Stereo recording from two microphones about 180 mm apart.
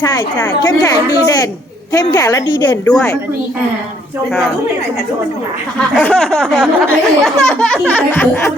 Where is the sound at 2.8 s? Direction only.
10° left (ahead or behind).